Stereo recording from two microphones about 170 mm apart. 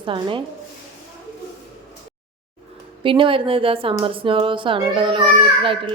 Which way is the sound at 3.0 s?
30° right (ahead or behind).